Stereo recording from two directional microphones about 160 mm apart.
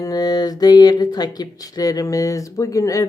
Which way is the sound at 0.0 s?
25° left (ahead or behind).